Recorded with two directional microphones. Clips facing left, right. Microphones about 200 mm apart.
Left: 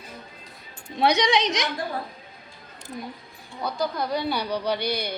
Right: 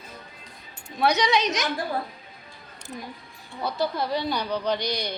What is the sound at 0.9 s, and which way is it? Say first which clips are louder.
Carnatic music: left 1 dB; 15° left (ahead or behind).